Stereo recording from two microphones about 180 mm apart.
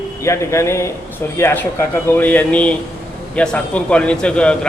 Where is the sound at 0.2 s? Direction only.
15° left (ahead or behind).